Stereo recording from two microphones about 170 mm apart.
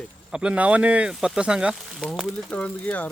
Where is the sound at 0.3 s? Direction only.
5° right (ahead or behind).